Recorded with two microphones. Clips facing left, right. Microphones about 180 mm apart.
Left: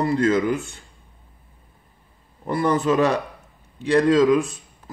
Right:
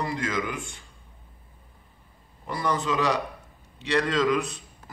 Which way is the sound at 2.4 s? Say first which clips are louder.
Left 7 dB; 55° left (ahead or behind).